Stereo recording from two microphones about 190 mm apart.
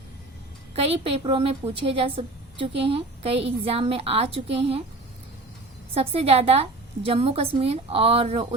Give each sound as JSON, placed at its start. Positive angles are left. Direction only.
{"t": 0.8, "sound": "a woman's voice", "side_deg": -30}
{"t": 5.9, "sound": "a woman's voice", "side_deg": -30}